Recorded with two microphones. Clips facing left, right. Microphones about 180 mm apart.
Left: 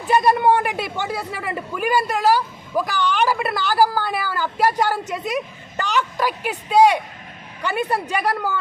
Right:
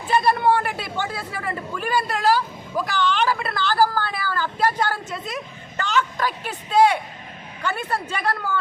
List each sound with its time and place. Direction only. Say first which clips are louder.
0.2 s speech: left 1 dB; 15° left (ahead or behind)